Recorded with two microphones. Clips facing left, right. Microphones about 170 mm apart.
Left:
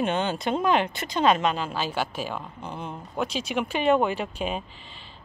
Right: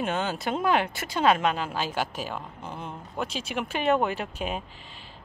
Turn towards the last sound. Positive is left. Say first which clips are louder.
# left 1 dB
turn(degrees=-5)  # may be behind; listen again after turning